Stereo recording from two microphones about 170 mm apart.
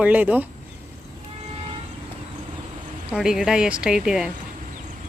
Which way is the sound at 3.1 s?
5° right (ahead or behind).